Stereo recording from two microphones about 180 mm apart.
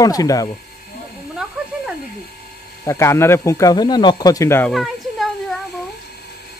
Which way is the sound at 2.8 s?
15° left (ahead or behind).